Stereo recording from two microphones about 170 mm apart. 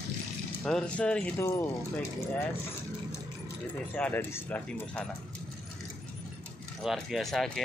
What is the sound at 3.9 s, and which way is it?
Speech, 10° left (ahead or behind).